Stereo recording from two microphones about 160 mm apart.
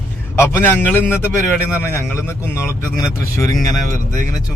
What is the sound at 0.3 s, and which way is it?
A man's voice, 15° left (ahead or behind).